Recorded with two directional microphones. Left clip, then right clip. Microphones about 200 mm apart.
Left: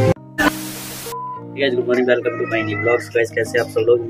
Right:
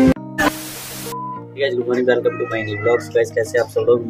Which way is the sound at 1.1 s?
Centre (ahead or behind).